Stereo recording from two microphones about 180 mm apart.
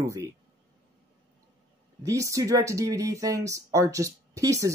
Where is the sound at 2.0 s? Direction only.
15° right (ahead or behind).